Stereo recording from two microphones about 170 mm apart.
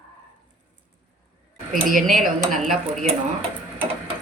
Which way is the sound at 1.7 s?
55° right (ahead or behind).